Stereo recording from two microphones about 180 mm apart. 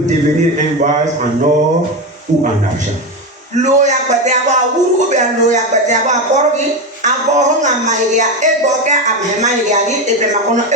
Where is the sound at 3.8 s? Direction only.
40° right (ahead or behind).